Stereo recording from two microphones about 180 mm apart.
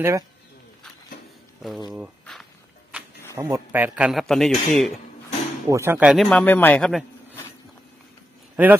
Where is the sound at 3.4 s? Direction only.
10° right (ahead or behind).